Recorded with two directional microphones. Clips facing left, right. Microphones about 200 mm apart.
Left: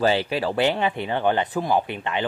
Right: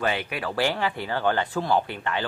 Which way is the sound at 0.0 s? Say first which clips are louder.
Left 6 dB; 30° left (ahead or behind).